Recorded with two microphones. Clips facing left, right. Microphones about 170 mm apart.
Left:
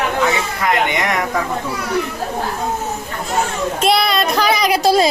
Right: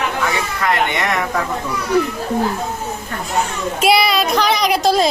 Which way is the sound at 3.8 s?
5° right (ahead or behind).